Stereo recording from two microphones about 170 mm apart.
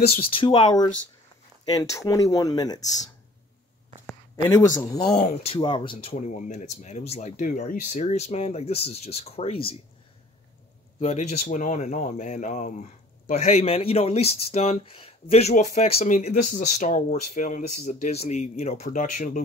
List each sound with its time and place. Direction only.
0.4 s speech: 30° left (ahead or behind)
4.0 s speech: 15° left (ahead or behind)
5.2 s speech: 35° left (ahead or behind)
11.0 s speech: 40° left (ahead or behind)